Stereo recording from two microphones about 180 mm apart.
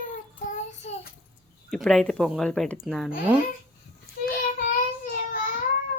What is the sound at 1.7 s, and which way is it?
Speech, centre (ahead or behind).